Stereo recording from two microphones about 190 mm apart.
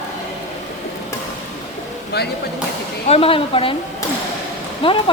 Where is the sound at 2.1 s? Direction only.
60° left (ahead or behind).